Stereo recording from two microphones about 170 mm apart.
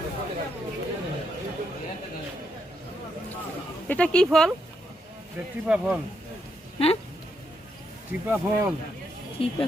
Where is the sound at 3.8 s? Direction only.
5° left (ahead or behind).